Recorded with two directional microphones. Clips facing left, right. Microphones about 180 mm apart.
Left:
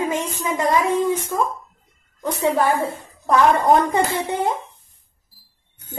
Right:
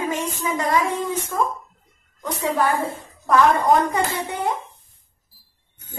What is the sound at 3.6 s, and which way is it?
Speech, 25° left (ahead or behind).